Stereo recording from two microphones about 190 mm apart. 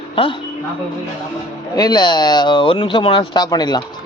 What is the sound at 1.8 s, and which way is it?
Speech, 20° left (ahead or behind).